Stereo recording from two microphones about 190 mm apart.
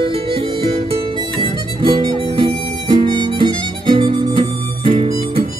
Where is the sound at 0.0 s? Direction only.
30° right (ahead or behind).